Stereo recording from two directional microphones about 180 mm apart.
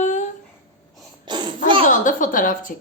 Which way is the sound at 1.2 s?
25° right (ahead or behind).